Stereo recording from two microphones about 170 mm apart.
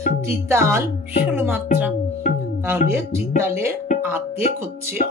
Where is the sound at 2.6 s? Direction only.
15° right (ahead or behind).